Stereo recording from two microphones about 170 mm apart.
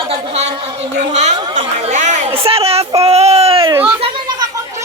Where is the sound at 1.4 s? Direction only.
30° right (ahead or behind).